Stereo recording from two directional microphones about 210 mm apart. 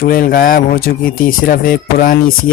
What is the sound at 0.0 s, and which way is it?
Speech, 45° left (ahead or behind).